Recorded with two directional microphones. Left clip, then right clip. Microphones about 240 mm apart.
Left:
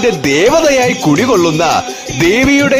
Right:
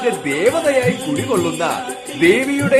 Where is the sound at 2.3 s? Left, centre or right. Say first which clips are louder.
Left 5 dB; left.